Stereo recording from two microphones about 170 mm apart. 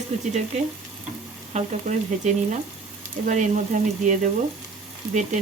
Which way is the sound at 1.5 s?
45° right (ahead or behind).